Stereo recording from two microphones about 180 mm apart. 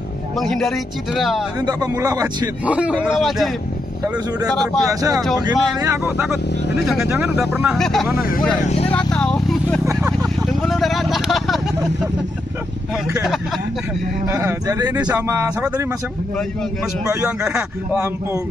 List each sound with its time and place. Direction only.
0.4 s speech: centre (ahead or behind)
1.7 s speech: 20° right (ahead or behind)
2.6 s a man's voice: 5° right (ahead or behind)
4.6 s speech: centre (ahead or behind)
5.5 s a man's voice: 20° right (ahead or behind)
6.2 s a man's voice: centre (ahead or behind)
7.7 s speech: centre (ahead or behind)
8.2 s speech: 50° left (ahead or behind)
8.6 s speech: 35° left (ahead or behind)
8.9 s vehicle: 5° left (ahead or behind)
14.3 s a man's voice: 15° right (ahead or behind)
17.1 s a man's voice: 10° right (ahead or behind)